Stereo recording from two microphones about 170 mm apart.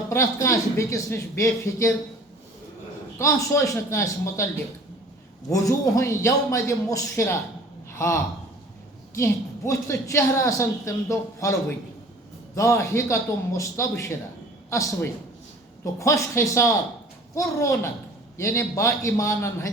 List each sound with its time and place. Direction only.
0.1 s a woman's voice: 15° left (ahead or behind)
3.2 s a woman's voice: 15° left (ahead or behind)
5.5 s a woman's voice: 20° left (ahead or behind)
7.9 s a sound: 15° left (ahead or behind)
9.1 s a woman's voice: 15° left (ahead or behind)
12.5 s a woman's voice: 15° left (ahead or behind)